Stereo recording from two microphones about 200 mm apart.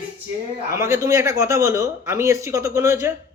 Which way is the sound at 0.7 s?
15° right (ahead or behind).